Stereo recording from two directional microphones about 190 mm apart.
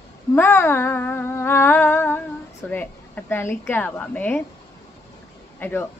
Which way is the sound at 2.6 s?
10° left (ahead or behind).